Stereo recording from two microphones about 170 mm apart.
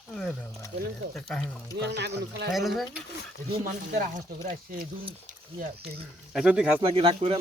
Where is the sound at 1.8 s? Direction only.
90° right.